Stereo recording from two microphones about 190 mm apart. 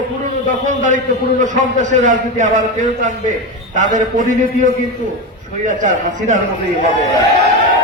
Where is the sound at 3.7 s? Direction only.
45° right (ahead or behind).